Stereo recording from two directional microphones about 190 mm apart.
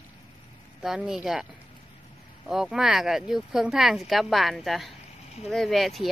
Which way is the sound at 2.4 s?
Centre (ahead or behind).